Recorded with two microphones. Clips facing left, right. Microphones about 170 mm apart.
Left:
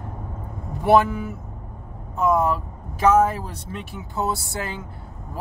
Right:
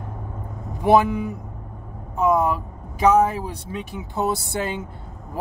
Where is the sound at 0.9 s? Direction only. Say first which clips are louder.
Even; 15° right (ahead or behind).